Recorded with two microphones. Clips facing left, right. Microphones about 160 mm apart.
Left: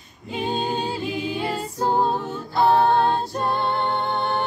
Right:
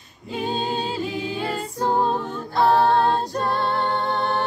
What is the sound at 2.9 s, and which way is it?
Music, 20° left (ahead or behind).